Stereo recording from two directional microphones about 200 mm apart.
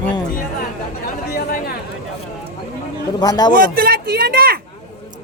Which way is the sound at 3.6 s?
50° right (ahead or behind).